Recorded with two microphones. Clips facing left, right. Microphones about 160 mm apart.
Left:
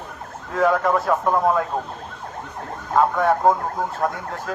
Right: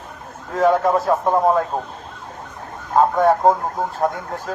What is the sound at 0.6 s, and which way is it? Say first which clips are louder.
Speech: right 3 dB; 30° right (ahead or behind).